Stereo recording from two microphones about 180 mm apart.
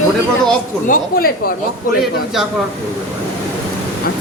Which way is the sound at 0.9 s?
55° left (ahead or behind).